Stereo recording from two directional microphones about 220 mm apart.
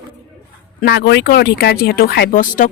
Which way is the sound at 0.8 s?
45° left (ahead or behind).